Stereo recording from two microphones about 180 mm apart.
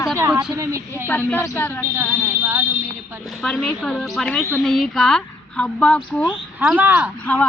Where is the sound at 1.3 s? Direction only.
10° left (ahead or behind).